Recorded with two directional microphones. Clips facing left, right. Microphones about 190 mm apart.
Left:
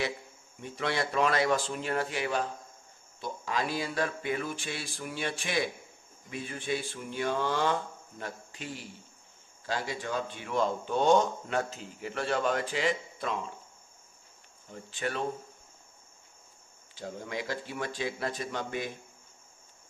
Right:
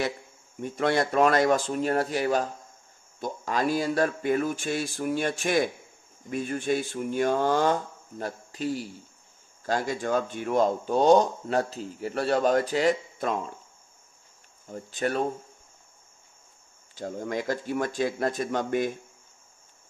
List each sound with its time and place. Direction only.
0.6 s speech: 45° right (ahead or behind)
14.7 s speech: 40° right (ahead or behind)
16.9 s speech: 45° right (ahead or behind)